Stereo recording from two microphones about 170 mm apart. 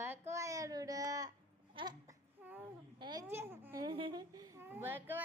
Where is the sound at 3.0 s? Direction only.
25° right (ahead or behind).